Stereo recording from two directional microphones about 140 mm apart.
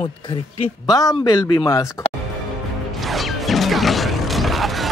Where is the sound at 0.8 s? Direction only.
25° left (ahead or behind).